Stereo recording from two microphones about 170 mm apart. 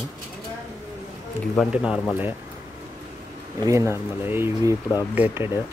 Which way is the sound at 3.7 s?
15° right (ahead or behind).